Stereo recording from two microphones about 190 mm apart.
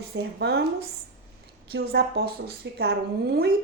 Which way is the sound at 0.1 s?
65° right (ahead or behind).